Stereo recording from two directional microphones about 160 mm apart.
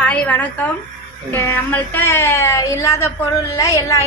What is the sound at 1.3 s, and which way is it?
A woman's voice, 10° left (ahead or behind).